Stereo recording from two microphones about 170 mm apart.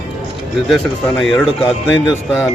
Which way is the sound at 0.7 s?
Centre (ahead or behind).